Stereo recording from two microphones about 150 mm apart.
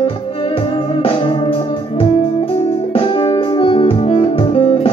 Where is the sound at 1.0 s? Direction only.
35° left (ahead or behind).